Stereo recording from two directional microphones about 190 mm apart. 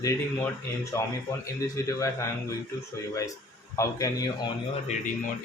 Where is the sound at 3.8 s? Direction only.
15° left (ahead or behind).